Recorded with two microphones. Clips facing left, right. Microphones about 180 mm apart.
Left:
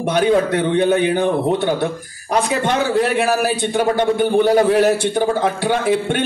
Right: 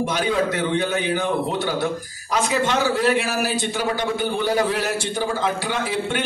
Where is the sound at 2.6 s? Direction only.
55° left (ahead or behind).